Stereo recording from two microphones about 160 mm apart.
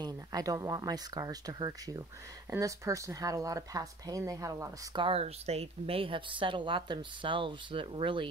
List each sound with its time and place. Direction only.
0.0 s speech: 25° right (ahead or behind)
5.0 s a woman's voice: 40° right (ahead or behind)